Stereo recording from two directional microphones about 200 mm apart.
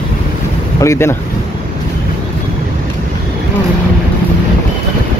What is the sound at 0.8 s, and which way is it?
Speech, 15° left (ahead or behind).